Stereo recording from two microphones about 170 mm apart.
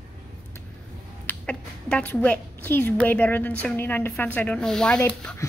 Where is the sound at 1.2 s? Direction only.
10° left (ahead or behind).